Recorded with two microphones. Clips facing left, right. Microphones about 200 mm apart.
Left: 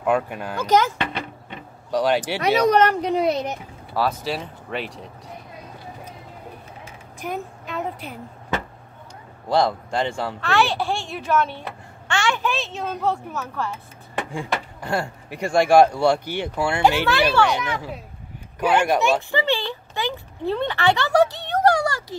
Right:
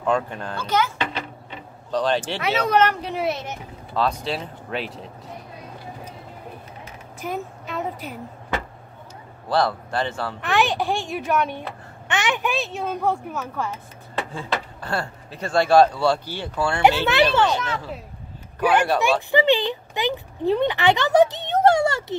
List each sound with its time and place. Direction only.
0.0 s speech: 10° left (ahead or behind)
1.9 s speech: 10° left (ahead or behind)
2.7 s speech: 35° left (ahead or behind)
3.4 s speech: 10° left (ahead or behind)
7.2 s a sound: centre (ahead or behind)
9.5 s speech: 15° left (ahead or behind)
10.4 s speech: 15° right (ahead or behind)
14.1 s speech: 15° left (ahead or behind)
17.0 s speech: 20° right (ahead or behind)
17.5 s speech: 15° left (ahead or behind)
19.3 s speech: 20° right (ahead or behind)